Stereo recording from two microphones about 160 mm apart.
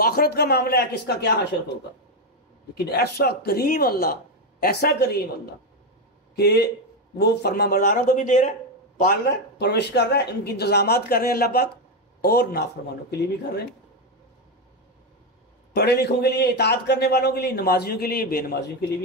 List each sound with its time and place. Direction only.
0.0 s speech: 70° left (ahead or behind); by 1.3 s 90° left
2.8 s speech: 85° left
6.3 s a man's voice: 90° left; by 9.1 s 55° left (ahead or behind)
9.6 s speech: 90° left; by 12.6 s 75° left (ahead or behind)
15.7 s a man's voice: 85° left